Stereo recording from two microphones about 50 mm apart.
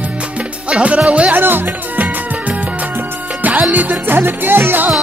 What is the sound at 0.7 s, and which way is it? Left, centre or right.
Music, right.